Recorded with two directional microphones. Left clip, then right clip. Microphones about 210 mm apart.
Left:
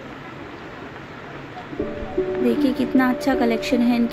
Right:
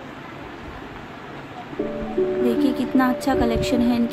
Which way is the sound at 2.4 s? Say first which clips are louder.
Even; centre (ahead or behind).